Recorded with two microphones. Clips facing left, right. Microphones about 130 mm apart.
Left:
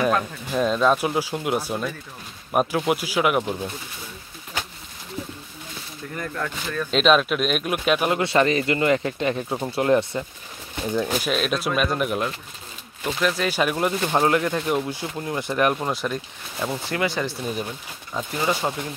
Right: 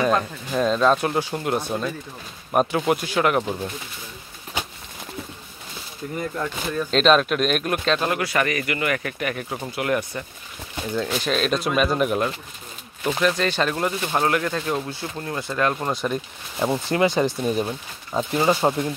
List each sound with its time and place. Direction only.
0.0 s speech: 5° left (ahead or behind)
6.4 s speech: 15° right (ahead or behind)
6.9 s speech: 5° left (ahead or behind); by 10.2 s 25° left (ahead or behind)
11.1 s speech: 5° left (ahead or behind)
15.7 s speech: 5° left (ahead or behind)
16.6 s speech: 25° right (ahead or behind)